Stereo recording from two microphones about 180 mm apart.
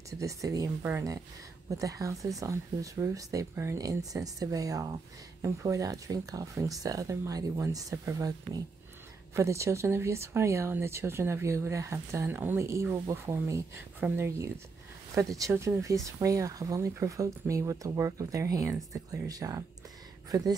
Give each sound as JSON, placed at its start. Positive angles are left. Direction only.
{"t": 0.2, "sound": "speech", "side_deg": -20}